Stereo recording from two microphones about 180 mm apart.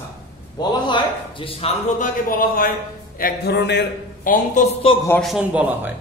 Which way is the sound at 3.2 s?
65° left (ahead or behind).